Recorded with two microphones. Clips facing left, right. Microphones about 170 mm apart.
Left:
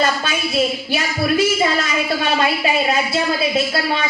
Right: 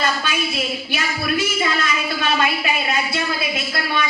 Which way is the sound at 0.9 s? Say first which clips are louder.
Left 4 dB; 30° left (ahead or behind).